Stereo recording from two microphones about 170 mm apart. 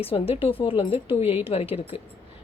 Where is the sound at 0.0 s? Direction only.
35° left (ahead or behind).